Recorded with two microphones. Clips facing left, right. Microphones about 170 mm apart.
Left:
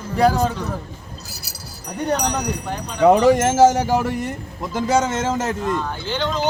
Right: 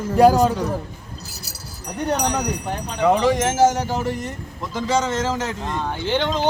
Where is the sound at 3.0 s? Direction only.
55° left (ahead or behind).